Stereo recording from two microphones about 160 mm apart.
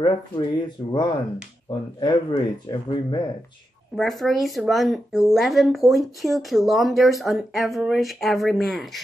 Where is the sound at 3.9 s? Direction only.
Centre (ahead or behind).